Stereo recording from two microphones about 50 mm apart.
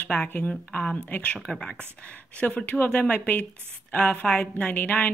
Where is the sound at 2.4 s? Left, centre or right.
Left.